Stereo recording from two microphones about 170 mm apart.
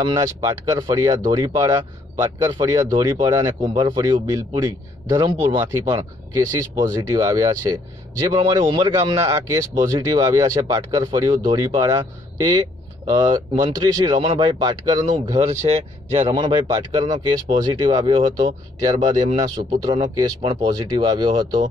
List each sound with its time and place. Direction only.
0.0 s speech: 25° right (ahead or behind)
15.4 s speech: 40° right (ahead or behind)
16.3 s speech: 25° right (ahead or behind)